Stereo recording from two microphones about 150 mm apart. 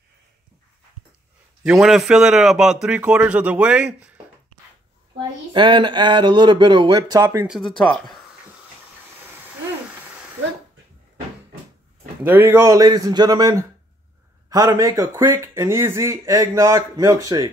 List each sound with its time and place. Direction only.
1.6 s a man's voice: 5° right (ahead or behind)
5.5 s speech: 35° right (ahead or behind)
7.4 s a man's voice: centre (ahead or behind)
12.2 s speech: 10° right (ahead or behind)